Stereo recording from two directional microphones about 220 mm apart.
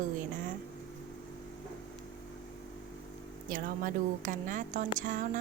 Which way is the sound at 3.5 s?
40° right (ahead or behind).